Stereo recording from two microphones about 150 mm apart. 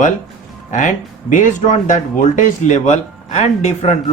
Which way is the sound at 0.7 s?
55° left (ahead or behind).